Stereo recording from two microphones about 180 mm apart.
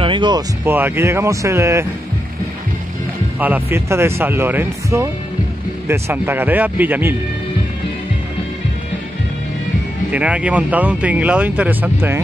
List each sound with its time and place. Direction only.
0.0 s a sound: 25° right (ahead or behind)
0.7 s speech: 10° right (ahead or behind)
3.3 s speech: 10° right (ahead or behind)
10.1 s speech: 5° right (ahead or behind)